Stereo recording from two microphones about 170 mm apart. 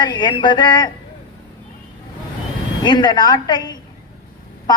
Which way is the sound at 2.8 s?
25° left (ahead or behind).